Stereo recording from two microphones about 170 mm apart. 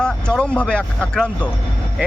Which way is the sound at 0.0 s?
5° left (ahead or behind).